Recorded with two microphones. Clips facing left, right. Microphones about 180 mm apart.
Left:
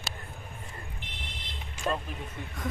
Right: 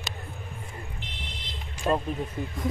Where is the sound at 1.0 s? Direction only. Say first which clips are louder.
Right 4 dB; 55° left (ahead or behind).